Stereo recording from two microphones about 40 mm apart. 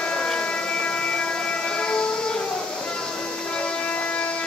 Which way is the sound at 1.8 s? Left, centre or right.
Left.